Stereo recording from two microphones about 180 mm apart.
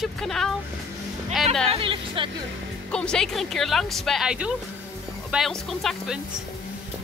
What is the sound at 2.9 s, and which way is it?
A woman's voice, 5° left (ahead or behind).